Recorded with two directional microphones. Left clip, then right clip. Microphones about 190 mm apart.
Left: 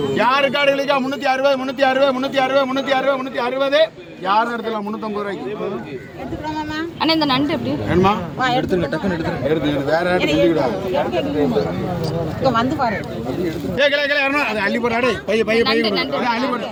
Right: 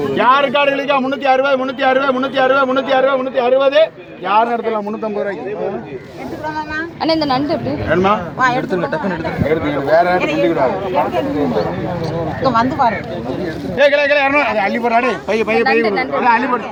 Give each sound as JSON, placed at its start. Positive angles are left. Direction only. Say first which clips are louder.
{"t": 0.2, "sound": "a man's voice", "louder": "right 4 dB", "side_deg": 50}
{"t": 7.0, "sound": "speech", "louder": "right 1 dB", "side_deg": 30}
{"t": 9.5, "sound": "a man's voice", "louder": "right 4 dB", "side_deg": 35}
{"t": 12.4, "sound": "speech", "louder": "right 4 dB", "side_deg": 15}
{"t": 13.7, "sound": "a man's voice", "louder": "right 5 dB", "side_deg": 25}